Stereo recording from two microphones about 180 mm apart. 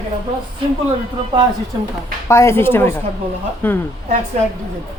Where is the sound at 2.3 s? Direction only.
15° left (ahead or behind).